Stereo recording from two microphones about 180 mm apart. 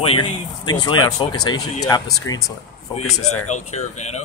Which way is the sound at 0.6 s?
25° left (ahead or behind).